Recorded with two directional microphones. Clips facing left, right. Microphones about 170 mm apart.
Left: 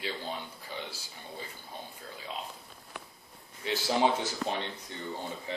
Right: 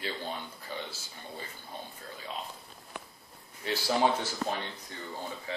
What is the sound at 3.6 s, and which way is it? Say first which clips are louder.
Speech: even; 20° left (ahead or behind).